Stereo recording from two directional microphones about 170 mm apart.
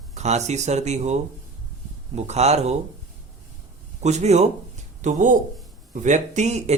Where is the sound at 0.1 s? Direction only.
40° right (ahead or behind).